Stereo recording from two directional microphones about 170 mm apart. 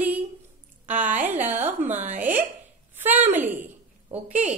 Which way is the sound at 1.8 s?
45° right (ahead or behind).